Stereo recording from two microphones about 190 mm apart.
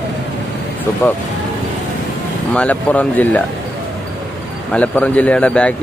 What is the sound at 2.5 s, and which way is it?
Speech, 10° left (ahead or behind).